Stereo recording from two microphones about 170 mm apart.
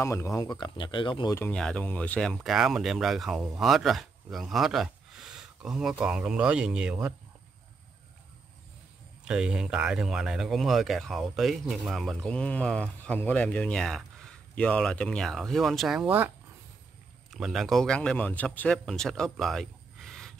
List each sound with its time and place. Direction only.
0.0 s speech: 15° left (ahead or behind)
1.3 s speech: 10° left (ahead or behind); by 7.2 s 5° right (ahead or behind)
9.2 s a man's voice: 5° right (ahead or behind)